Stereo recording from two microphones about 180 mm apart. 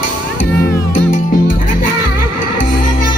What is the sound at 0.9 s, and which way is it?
Music, 50° left (ahead or behind).